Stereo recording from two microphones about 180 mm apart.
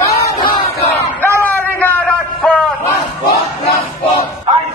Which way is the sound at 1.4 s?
10° left (ahead or behind).